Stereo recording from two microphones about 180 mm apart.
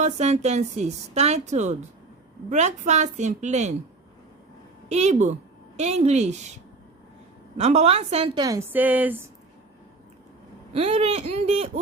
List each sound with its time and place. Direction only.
0.0 s a woman's voice: 40° right (ahead or behind)
4.9 s a woman's voice: 40° right (ahead or behind)
7.5 s a woman's voice: 35° right (ahead or behind)
8.7 s speech: 10° right (ahead or behind)
10.8 s a woman's voice: 35° right (ahead or behind)